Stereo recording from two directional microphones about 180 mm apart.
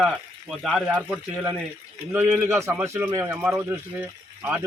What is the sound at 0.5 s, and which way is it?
A man's voice, centre (ahead or behind).